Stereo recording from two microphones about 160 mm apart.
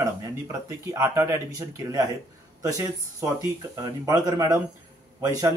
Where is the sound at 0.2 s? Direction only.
20° right (ahead or behind).